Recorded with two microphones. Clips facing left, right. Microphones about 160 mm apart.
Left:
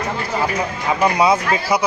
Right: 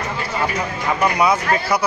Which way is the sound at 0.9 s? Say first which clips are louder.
Left 2 dB; 20° left (ahead or behind).